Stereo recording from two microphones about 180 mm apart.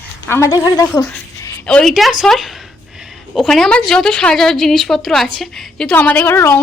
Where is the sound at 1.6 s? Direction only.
5° left (ahead or behind).